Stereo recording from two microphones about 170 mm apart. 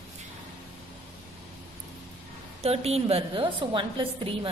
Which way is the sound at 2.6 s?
35° right (ahead or behind).